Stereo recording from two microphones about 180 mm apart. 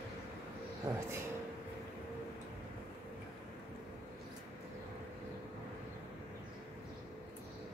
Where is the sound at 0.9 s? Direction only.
20° right (ahead or behind).